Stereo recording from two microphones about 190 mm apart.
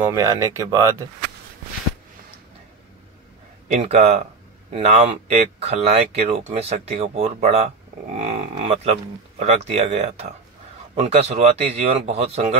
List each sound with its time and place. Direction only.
0.0 s speech: 15° right (ahead or behind)
3.7 s speech: 35° right (ahead or behind)